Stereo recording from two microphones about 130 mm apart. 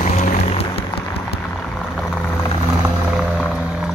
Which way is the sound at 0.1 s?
65° left (ahead or behind).